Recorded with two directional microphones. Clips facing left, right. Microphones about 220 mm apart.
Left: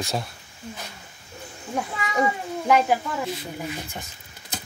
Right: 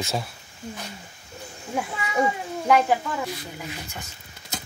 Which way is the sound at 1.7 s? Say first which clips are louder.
Even; centre (ahead or behind).